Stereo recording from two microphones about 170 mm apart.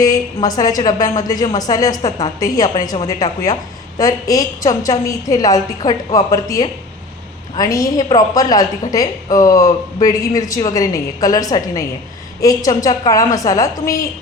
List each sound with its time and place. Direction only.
0.4 s a woman's voice: 20° left (ahead or behind)